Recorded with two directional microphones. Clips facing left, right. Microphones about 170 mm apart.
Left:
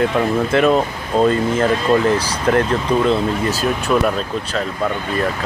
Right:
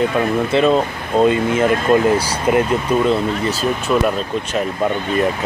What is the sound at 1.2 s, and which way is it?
Speech, 5° right (ahead or behind).